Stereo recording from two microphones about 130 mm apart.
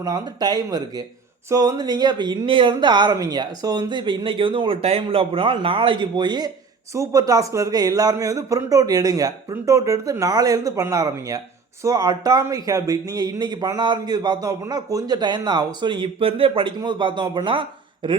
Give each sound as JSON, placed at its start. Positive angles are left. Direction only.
{"t": 0.0, "sound": "a man's voice", "side_deg": -30}